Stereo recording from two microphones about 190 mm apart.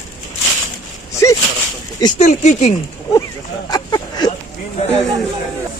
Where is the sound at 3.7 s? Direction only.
20° left (ahead or behind).